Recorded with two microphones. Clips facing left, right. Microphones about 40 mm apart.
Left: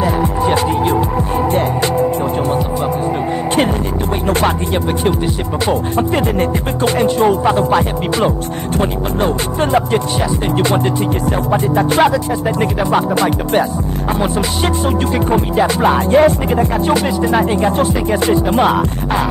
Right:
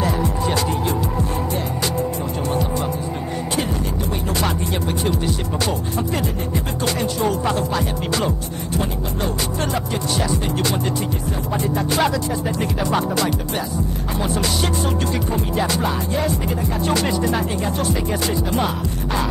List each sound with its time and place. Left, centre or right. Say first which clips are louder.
0.2 s music: left 6 dB; left
5.0 s music: left 5 dB; left
11.5 s music: left 7 dB; left
15.8 s music: left 11 dB; left
17.3 s music: left 8 dB; left